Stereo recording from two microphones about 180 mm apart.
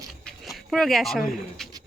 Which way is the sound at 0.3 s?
Centre (ahead or behind).